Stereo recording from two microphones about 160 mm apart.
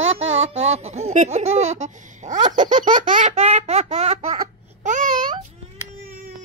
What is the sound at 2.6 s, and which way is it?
Baby laughter, 55° right (ahead or behind).